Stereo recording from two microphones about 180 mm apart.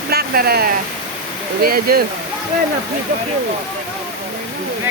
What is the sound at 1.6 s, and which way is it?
Speech, 55° right (ahead or behind).